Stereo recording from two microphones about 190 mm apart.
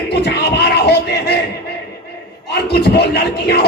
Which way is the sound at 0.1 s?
60° left (ahead or behind).